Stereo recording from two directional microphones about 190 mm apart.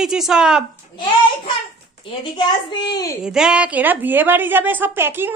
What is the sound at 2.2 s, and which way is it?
Speech, 25° left (ahead or behind).